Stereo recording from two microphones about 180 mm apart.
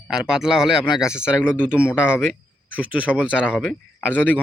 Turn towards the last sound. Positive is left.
turn(degrees=0)  # may be behind; listen again after turning